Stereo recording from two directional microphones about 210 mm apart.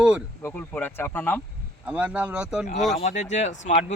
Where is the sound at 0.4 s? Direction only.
10° left (ahead or behind).